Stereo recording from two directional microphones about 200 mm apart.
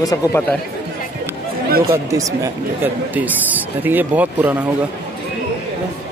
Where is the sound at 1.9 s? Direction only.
15° right (ahead or behind).